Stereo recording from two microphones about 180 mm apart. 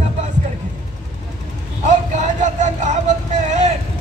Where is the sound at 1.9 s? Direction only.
40° right (ahead or behind).